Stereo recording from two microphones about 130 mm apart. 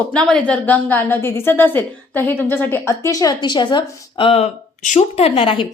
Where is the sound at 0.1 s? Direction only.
5° left (ahead or behind); by 4.3 s 35° left (ahead or behind).